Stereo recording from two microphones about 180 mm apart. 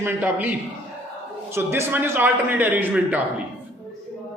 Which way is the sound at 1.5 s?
15° right (ahead or behind).